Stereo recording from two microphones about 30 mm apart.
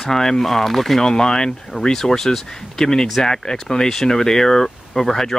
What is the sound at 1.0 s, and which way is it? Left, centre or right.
Speech, left.